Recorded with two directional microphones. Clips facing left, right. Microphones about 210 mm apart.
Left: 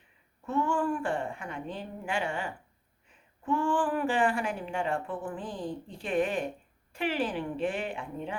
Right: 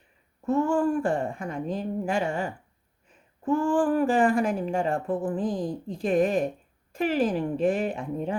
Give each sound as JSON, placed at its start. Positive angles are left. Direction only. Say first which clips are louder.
{"t": 0.4, "sound": "a woman's voice", "louder": "right 6 dB", "side_deg": -40}